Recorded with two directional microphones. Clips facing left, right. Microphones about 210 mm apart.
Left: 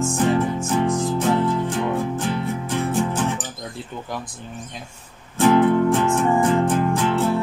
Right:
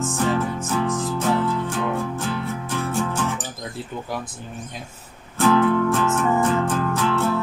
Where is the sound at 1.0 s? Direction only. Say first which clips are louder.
Left 2 dB; 20° left (ahead or behind).